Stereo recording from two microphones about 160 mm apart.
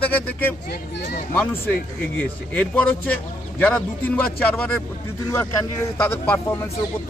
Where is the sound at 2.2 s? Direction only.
10° left (ahead or behind).